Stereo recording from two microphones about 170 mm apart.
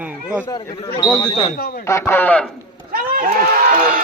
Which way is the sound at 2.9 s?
55° right (ahead or behind).